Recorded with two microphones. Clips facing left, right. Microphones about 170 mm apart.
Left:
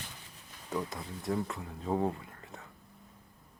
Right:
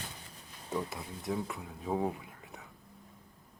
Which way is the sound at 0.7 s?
5° right (ahead or behind).